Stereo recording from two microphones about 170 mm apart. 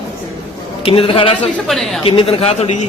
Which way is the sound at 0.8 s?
35° left (ahead or behind).